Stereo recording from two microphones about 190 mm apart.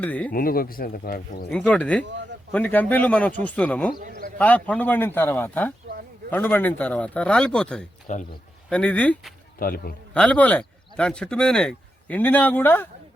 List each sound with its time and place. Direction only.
0.0 s speech: 5° left (ahead or behind)
0.3 s speech: 50° left (ahead or behind)
1.5 s speech: 5° left (ahead or behind)
8.1 s speech: 40° left (ahead or behind)
8.7 s speech: 5° left (ahead or behind)
9.6 s speech: 50° left (ahead or behind)
10.2 s speech: 5° left (ahead or behind)